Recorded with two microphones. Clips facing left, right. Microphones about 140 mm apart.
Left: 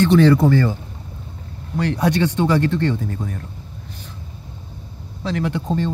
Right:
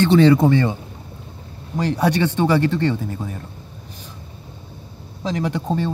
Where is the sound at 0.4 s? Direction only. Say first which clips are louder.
Even; 20° right (ahead or behind).